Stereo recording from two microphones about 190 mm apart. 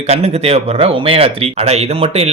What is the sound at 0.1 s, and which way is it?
Speech, 35° right (ahead or behind).